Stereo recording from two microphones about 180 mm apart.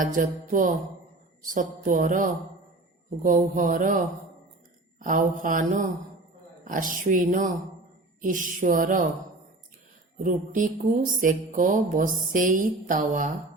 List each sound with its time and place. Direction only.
0.0 s speech: 50° right (ahead or behind)
10.2 s speech: 45° right (ahead or behind)